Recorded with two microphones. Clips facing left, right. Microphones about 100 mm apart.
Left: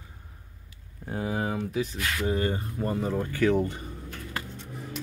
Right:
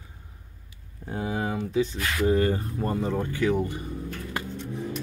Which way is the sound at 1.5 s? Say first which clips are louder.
Right 3 dB; 30° right (ahead or behind).